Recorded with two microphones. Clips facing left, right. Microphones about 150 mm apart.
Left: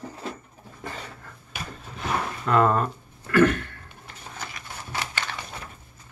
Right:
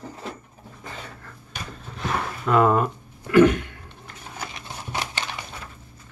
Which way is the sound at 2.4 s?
5° right (ahead or behind).